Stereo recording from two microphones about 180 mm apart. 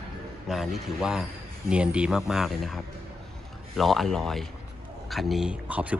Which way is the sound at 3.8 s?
Centre (ahead or behind).